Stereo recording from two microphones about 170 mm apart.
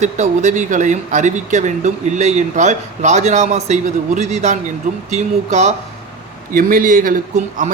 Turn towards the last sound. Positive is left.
turn(degrees=-50)  # may be behind; listen again after turning